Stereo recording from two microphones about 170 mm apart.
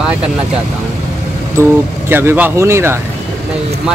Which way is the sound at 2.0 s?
10° right (ahead or behind).